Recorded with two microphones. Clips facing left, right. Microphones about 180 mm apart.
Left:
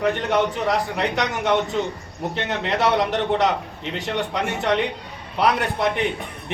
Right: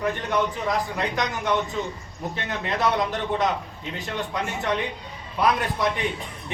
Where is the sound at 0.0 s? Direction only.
75° left (ahead or behind).